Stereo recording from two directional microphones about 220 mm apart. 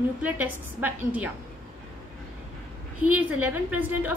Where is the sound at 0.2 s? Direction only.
5° right (ahead or behind).